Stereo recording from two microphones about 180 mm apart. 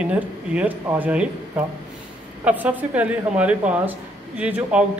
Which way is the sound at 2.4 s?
10° right (ahead or behind).